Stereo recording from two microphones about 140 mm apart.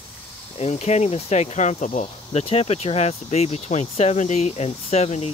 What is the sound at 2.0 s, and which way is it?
Speech, 45° left (ahead or behind).